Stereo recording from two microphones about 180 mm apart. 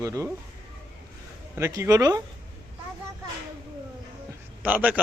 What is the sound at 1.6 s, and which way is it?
Speech, 15° right (ahead or behind).